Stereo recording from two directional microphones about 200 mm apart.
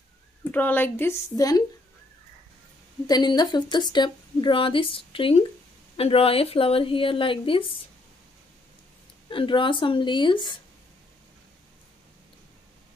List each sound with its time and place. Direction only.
0.5 s speech: 10° left (ahead or behind)
3.1 s speech: 20° left (ahead or behind)
9.3 s speech: 25° left (ahead or behind)